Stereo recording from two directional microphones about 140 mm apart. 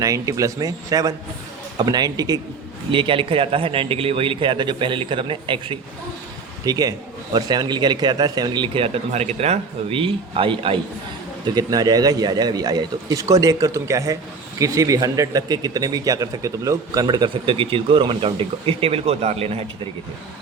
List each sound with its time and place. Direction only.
0.0 s speech: 25° right (ahead or behind)
2.9 s speech: 35° right (ahead or behind)
6.7 s speech: 25° right (ahead or behind)
11.5 s speech: 30° right (ahead or behind); by 19.9 s 45° right (ahead or behind)